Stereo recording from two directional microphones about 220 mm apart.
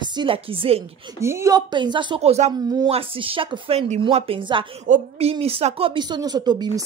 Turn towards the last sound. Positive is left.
turn(degrees=-20)  # may be behind; listen again after turning